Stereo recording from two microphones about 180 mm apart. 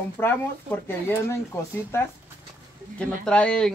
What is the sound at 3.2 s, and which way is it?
Speech, 5° left (ahead or behind).